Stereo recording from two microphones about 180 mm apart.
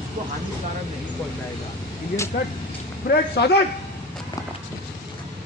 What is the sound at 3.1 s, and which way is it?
Speech, 65° left (ahead or behind).